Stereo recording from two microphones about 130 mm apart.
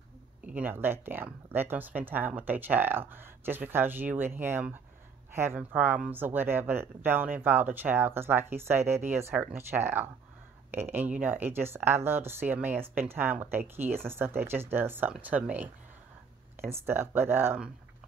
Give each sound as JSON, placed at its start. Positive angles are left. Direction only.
{"t": 0.5, "sound": "speech", "side_deg": -15}
{"t": 9.3, "sound": "speech", "side_deg": -5}
{"t": 9.6, "sound": "speech", "side_deg": -20}